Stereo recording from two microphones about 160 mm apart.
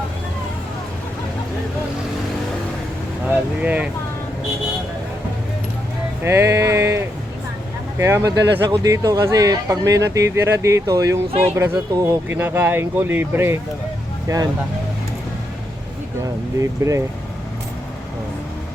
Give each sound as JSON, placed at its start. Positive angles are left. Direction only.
{"t": 3.2, "sound": "speech", "side_deg": -10}
{"t": 6.2, "sound": "speech", "side_deg": -15}
{"t": 16.2, "sound": "speech", "side_deg": -20}